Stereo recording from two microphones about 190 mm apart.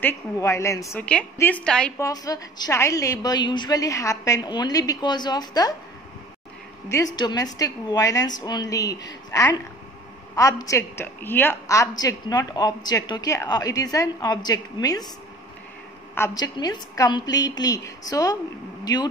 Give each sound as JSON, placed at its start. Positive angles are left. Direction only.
{"t": 0.0, "sound": "a woman's voice", "side_deg": 15}
{"t": 2.0, "sound": "a woman's voice", "side_deg": 20}
{"t": 7.2, "sound": "a woman's voice", "side_deg": 20}
{"t": 16.2, "sound": "a woman's voice", "side_deg": 20}